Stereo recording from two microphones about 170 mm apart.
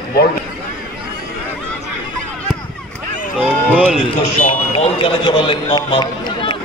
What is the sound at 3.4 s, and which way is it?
Run, 5° right (ahead or behind).